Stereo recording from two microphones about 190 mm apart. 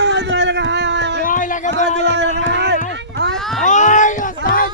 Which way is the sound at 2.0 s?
65° right (ahead or behind).